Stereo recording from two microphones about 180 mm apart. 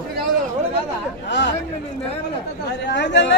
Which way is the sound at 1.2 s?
80° left.